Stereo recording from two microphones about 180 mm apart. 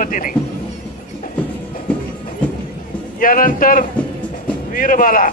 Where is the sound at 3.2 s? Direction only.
50° left (ahead or behind).